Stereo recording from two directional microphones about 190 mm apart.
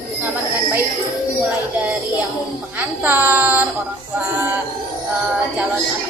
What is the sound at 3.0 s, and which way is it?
Speech, 10° right (ahead or behind).